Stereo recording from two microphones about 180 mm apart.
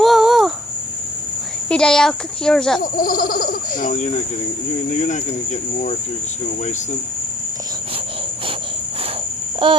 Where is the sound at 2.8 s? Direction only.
55° left (ahead or behind).